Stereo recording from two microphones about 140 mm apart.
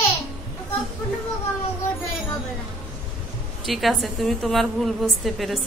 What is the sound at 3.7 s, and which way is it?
A woman's voice, centre (ahead or behind).